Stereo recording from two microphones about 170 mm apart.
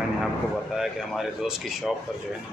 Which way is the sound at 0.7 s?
Centre (ahead or behind).